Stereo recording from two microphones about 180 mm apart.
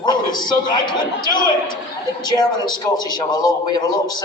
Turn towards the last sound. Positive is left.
turn(degrees=25)  # may be behind; listen again after turning